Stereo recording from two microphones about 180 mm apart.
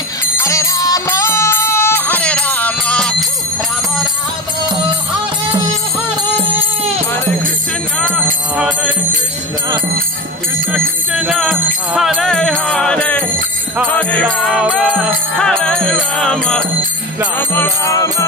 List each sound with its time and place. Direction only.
0.4 s music: 15° left (ahead or behind)
8.5 s music: 5° right (ahead or behind)
10.7 s music: 5° right (ahead or behind)
17.4 s music: 15° left (ahead or behind)